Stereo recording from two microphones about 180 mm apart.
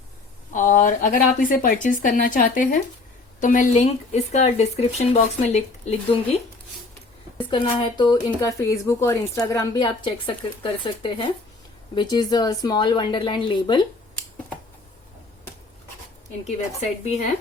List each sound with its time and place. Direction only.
0.5 s speech: 45° left (ahead or behind)
7.5 s speech: 25° left (ahead or behind)
16.4 s speech: 35° left (ahead or behind)